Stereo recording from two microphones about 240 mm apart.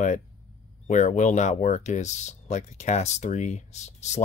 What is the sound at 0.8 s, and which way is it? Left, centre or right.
Speech, left.